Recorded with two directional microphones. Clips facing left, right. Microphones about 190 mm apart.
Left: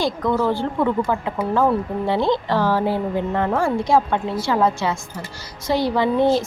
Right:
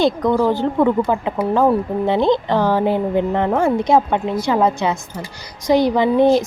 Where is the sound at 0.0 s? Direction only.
20° right (ahead or behind).